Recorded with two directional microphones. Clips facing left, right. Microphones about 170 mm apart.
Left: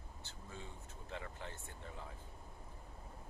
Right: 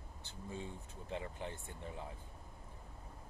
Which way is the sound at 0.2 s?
15° right (ahead or behind).